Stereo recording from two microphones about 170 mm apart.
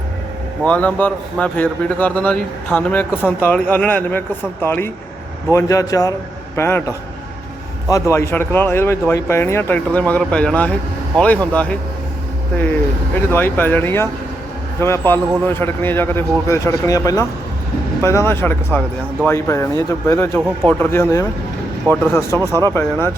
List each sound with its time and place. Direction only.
0.6 s speech: 10° left (ahead or behind)
7.9 s speech: 20° left (ahead or behind)
13.1 s speech: 10° left (ahead or behind)
22.4 s speech: 20° right (ahead or behind)
22.7 s speech: 15° left (ahead or behind)